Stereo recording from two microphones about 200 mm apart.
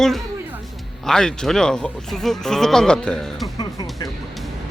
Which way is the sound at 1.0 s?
5° left (ahead or behind).